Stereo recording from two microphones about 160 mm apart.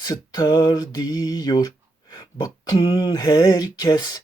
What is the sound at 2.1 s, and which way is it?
Speech, 25° left (ahead or behind).